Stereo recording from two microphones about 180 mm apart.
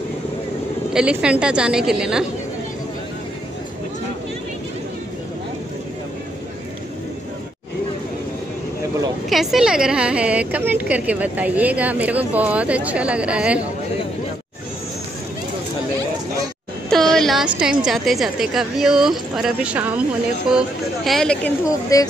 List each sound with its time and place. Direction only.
0.9 s a woman's voice: 5° right (ahead or behind)
9.3 s a woman's voice: centre (ahead or behind)
16.9 s a sound: centre (ahead or behind)
17.6 s a woman's voice: 5° right (ahead or behind)
21.6 s speech: 20° left (ahead or behind)